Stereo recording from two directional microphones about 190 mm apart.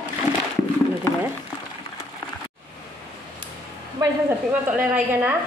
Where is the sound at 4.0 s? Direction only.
15° right (ahead or behind).